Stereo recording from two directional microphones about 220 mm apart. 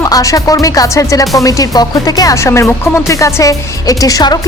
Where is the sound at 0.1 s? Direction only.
15° left (ahead or behind).